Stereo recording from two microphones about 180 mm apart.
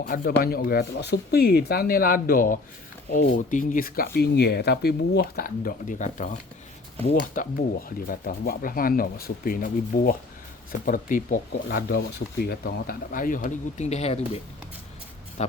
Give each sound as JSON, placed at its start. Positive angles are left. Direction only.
{"t": 0.0, "sound": "speech", "side_deg": 60}